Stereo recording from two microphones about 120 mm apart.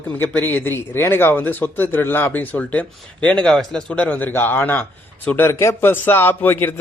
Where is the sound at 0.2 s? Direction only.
15° left (ahead or behind).